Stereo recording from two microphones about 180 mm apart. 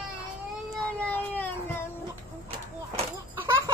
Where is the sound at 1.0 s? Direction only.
10° left (ahead or behind).